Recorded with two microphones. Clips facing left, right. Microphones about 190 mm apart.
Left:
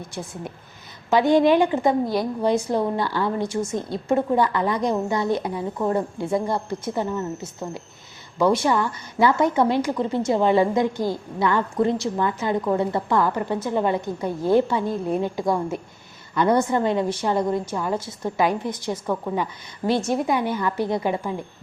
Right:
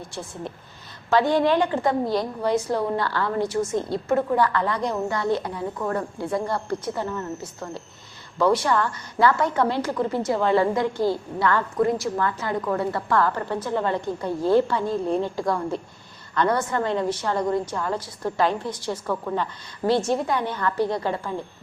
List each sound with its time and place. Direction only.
0.1 s a woman's voice: 15° left (ahead or behind)
17.9 s a woman's voice: 25° left (ahead or behind)